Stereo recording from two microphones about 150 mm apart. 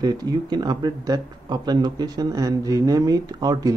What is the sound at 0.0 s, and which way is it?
Speech, 25° right (ahead or behind).